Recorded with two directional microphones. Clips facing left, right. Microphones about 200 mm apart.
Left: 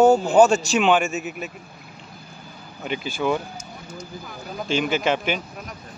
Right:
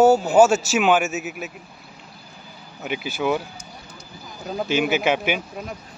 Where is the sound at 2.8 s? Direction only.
10° right (ahead or behind).